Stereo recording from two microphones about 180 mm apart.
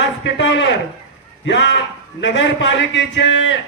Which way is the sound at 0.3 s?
85° left.